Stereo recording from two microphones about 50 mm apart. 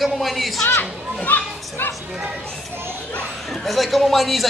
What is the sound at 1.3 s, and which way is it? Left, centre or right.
Speech, left.